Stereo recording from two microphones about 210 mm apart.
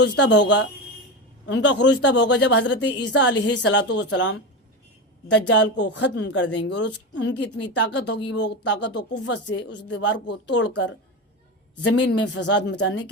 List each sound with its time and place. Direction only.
0.0 s speech: 55° left (ahead or behind)
11.8 s a woman's voice: 90° left
12.0 s speech: 55° left (ahead or behind)